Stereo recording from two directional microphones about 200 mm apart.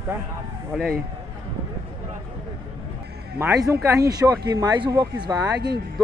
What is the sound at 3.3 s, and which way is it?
Speech, 15° right (ahead or behind).